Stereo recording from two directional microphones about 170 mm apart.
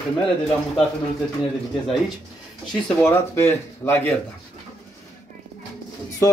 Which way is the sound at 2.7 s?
10° left (ahead or behind).